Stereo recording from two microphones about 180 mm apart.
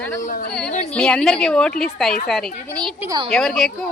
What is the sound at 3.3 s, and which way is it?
Speech, centre (ahead or behind).